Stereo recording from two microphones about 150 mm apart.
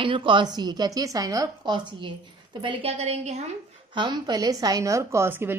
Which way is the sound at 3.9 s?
30° right (ahead or behind).